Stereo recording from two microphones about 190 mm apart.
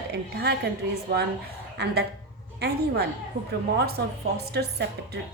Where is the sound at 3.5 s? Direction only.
55° right (ahead or behind).